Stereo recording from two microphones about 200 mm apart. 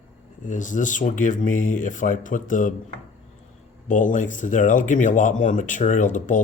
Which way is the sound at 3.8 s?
40° left (ahead or behind).